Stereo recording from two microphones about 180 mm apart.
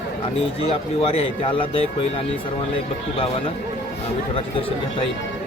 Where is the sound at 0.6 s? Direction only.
35° left (ahead or behind).